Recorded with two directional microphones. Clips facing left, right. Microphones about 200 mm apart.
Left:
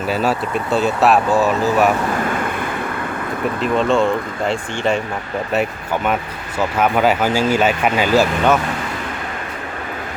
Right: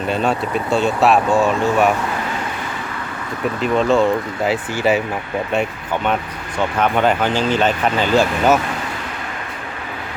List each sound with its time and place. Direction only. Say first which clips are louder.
0.1 s speech: even; 5° left (ahead or behind)
2.3 s vehicle: left 4 dB; 55° left (ahead or behind)
3.6 s speech: right 1 dB; centre (ahead or behind)
6.6 s speech: left 1 dB; 5° left (ahead or behind)